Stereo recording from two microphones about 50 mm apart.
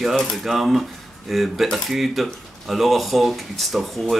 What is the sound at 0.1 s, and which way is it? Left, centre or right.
Speech, centre.